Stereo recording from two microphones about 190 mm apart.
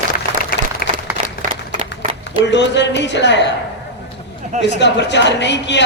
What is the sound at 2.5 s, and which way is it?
A woman's voice, 65° left (ahead or behind).